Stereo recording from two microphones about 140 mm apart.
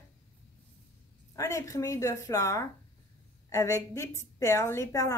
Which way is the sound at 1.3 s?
25° left (ahead or behind).